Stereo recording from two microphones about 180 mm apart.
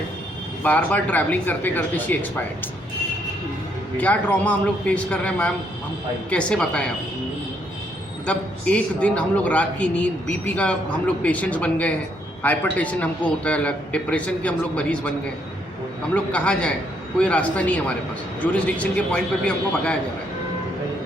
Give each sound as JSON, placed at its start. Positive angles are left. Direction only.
{"t": 0.6, "sound": "a man's voice", "side_deg": 10}
{"t": 3.9, "sound": "a man's voice", "side_deg": 10}
{"t": 8.3, "sound": "a man's voice", "side_deg": 5}
{"t": 16.1, "sound": "a man's voice", "side_deg": 5}